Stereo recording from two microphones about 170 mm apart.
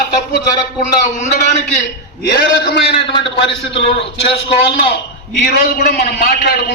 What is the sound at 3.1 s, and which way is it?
Speech, 30° left (ahead or behind).